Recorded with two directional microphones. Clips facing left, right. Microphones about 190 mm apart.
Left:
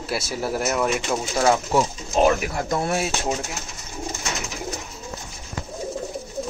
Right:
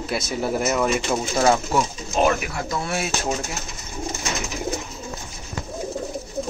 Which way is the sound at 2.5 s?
45° left (ahead or behind).